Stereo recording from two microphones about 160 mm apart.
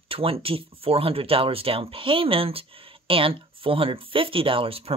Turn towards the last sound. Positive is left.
turn(degrees=-35)  # may be behind; listen again after turning